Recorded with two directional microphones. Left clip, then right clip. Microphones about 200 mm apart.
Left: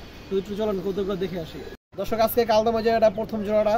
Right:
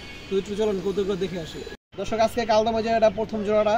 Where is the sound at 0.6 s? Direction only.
5° left (ahead or behind).